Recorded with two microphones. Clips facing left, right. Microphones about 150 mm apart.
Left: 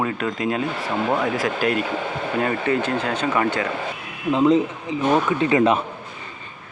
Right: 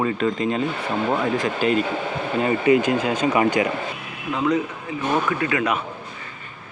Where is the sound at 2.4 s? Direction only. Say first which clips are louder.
Right 5 dB; 10° right (ahead or behind).